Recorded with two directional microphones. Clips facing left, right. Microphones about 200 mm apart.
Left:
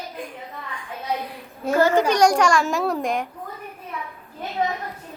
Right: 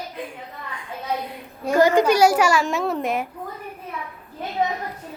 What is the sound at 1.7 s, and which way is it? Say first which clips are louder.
A child's voice: right 2 dB; 15° right (ahead or behind).